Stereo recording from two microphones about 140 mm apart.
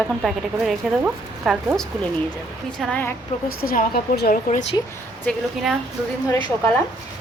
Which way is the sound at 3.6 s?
90° left.